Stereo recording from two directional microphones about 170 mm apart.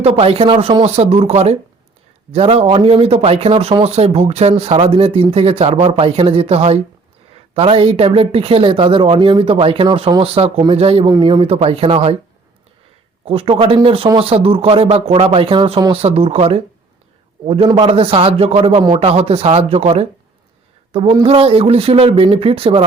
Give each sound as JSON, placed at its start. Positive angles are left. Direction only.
{"t": 0.0, "sound": "speech", "side_deg": -35}
{"t": 13.2, "sound": "speech", "side_deg": -35}